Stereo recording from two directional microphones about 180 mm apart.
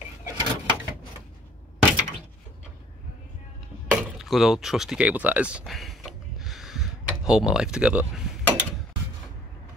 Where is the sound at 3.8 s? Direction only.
5° right (ahead or behind).